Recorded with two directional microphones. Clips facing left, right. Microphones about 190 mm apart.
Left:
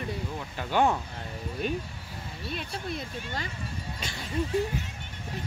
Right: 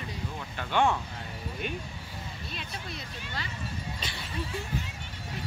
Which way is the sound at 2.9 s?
50° left (ahead or behind).